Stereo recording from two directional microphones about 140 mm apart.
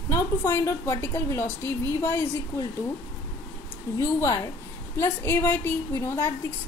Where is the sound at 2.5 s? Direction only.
15° left (ahead or behind).